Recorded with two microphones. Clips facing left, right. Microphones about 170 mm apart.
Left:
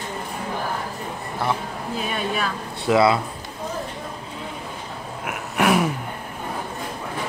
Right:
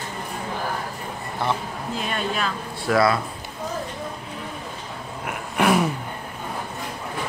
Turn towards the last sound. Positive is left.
turn(degrees=5)  # may be behind; listen again after turning